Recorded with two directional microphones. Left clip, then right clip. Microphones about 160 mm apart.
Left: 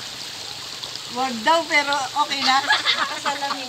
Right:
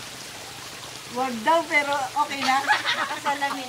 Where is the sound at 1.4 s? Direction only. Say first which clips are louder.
Left 2 dB; 90° left.